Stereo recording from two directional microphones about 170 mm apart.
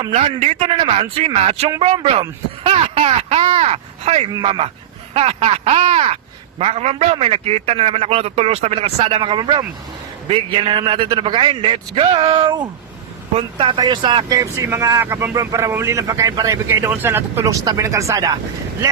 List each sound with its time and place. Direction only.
0.1 s a man's voice: 35° right (ahead or behind); by 18.3 s 20° right (ahead or behind)